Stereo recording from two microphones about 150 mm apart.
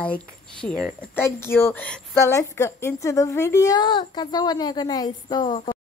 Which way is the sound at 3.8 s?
30° left (ahead or behind).